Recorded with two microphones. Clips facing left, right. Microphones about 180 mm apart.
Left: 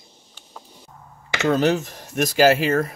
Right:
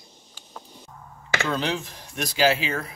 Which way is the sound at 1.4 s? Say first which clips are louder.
Left 9 dB; 45° left (ahead or behind).